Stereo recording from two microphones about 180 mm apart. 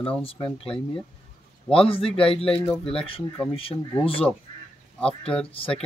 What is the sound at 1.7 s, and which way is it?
Speech, 30° left (ahead or behind).